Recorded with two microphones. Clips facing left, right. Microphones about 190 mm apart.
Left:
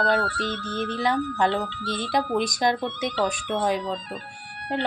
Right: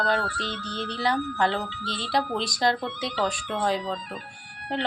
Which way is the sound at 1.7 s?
50° left (ahead or behind).